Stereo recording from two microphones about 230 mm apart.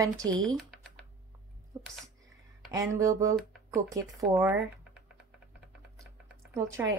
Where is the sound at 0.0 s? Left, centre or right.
Centre.